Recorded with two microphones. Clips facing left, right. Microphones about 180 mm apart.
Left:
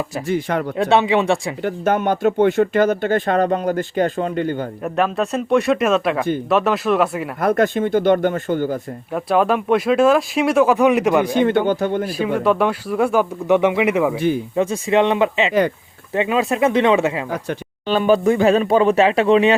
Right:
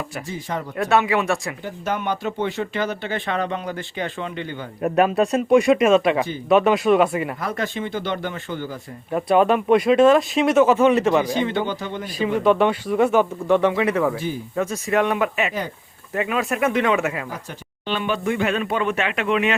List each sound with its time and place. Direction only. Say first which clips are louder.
0.3 s speech: left 10 dB; 65° left (ahead or behind)
0.8 s speech: left 3 dB; 25° left (ahead or behind)
1.6 s speech: left 9 dB; 55° left (ahead or behind)
4.8 s speech: right 4 dB; 5° right (ahead or behind)
7.4 s speech: left 9 dB; 50° left (ahead or behind)
9.1 s speech: even; centre (ahead or behind)
11.3 s speech: left 6 dB; 55° left (ahead or behind)
12.4 s speech: right 2 dB; 5° left (ahead or behind)
14.5 s speech: even; 25° left (ahead or behind)
17.8 s speech: left 8 dB; 40° left (ahead or behind)